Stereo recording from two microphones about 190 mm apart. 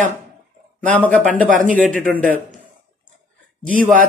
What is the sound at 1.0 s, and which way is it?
A man's voice, 10° left (ahead or behind).